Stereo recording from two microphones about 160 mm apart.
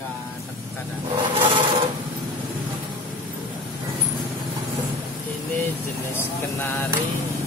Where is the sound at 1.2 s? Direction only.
30° right (ahead or behind).